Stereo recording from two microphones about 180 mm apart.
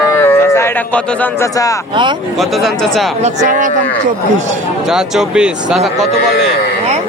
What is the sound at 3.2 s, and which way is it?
Speech, 40° right (ahead or behind).